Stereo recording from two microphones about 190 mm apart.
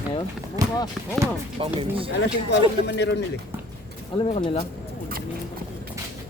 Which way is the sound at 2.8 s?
65° left (ahead or behind).